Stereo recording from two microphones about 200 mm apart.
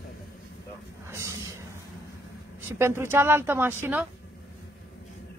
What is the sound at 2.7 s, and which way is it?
A woman's voice, 10° right (ahead or behind).